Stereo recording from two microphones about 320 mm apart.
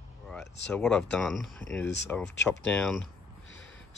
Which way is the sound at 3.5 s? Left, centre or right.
Left.